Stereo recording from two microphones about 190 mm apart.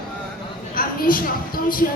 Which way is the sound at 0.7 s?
50° left (ahead or behind).